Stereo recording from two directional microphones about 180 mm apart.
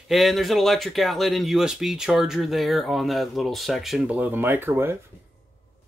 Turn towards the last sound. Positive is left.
turn(degrees=-10)  # may be behind; listen again after turning